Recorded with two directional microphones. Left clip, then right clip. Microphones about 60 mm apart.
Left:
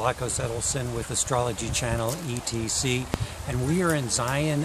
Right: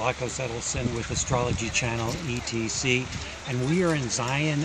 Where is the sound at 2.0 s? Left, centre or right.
Left.